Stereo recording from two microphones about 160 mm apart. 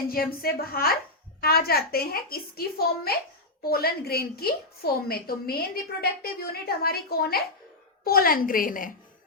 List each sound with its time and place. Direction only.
0.4 s a woman's voice: 70° left (ahead or behind)